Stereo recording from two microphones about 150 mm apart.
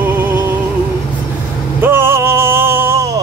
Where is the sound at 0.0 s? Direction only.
15° right (ahead or behind).